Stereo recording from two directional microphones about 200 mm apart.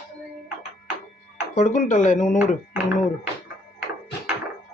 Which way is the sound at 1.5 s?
35° left (ahead or behind).